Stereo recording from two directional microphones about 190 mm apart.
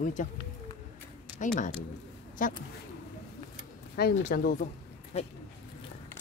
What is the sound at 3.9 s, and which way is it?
Speech, 55° left (ahead or behind).